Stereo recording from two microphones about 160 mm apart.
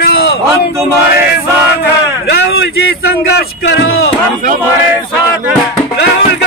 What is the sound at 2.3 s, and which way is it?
Speech, 85° left.